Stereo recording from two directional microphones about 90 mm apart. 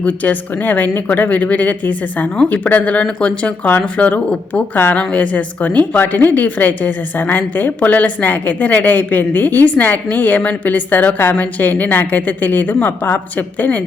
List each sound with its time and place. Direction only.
0.0 s a woman's voice: 20° left (ahead or behind)